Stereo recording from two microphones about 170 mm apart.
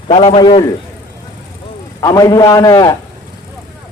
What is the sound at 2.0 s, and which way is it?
Speech, 20° left (ahead or behind).